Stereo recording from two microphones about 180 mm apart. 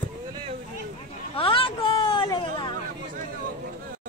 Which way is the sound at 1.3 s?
30° left (ahead or behind).